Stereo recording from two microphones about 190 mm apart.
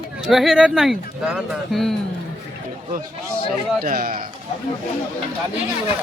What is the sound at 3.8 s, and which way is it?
Speech, 50° right (ahead or behind).